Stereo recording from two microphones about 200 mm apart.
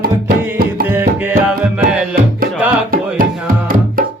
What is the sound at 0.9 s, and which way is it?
Music, 10° right (ahead or behind).